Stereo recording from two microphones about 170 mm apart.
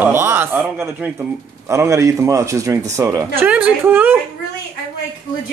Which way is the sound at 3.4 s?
10° right (ahead or behind).